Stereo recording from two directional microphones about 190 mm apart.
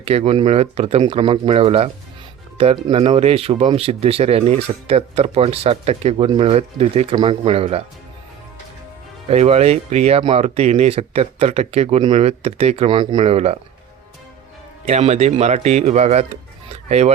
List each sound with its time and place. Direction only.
0.0 s speech: 30° right (ahead or behind)
2.9 s speech: 35° right (ahead or behind)
9.3 s speech: 35° right (ahead or behind)
14.8 s speech: 35° right (ahead or behind)